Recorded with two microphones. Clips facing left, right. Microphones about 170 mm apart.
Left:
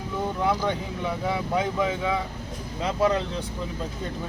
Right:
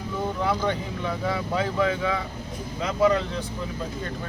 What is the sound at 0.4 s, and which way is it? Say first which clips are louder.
Speech: left 1 dB; 10° left (ahead or behind).